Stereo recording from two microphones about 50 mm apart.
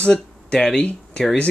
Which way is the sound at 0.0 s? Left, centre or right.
Left.